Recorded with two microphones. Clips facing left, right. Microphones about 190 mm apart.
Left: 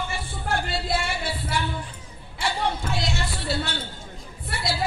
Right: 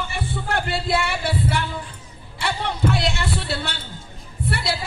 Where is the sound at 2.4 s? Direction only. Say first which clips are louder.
Right 1 dB; 60° right (ahead or behind).